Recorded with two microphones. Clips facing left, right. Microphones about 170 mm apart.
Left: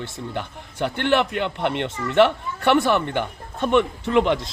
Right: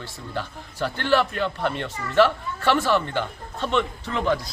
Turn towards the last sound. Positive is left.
turn(degrees=20)  # may be behind; listen again after turning